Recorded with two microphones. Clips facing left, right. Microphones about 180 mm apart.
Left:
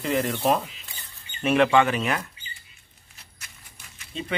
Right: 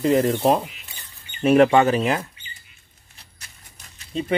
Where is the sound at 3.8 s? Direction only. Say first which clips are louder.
Right 7 dB; 35° right (ahead or behind).